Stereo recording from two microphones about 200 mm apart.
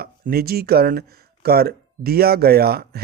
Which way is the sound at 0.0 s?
50° right (ahead or behind).